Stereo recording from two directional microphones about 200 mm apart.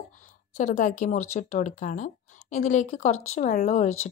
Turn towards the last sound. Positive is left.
turn(degrees=35)  # may be behind; listen again after turning